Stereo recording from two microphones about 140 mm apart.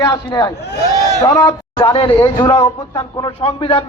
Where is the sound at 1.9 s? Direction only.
40° left (ahead or behind).